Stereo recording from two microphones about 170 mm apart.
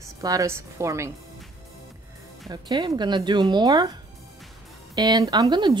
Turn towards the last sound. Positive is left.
turn(degrees=-25)  # may be behind; listen again after turning